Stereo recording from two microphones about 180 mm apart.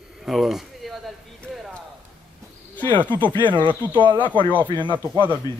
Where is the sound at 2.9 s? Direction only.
10° left (ahead or behind).